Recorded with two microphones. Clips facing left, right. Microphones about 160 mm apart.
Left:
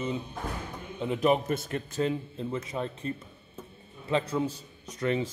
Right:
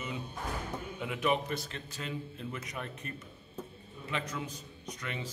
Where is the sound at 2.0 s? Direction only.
30° left (ahead or behind).